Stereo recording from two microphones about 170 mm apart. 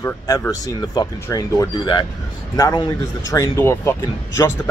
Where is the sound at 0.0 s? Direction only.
15° left (ahead or behind).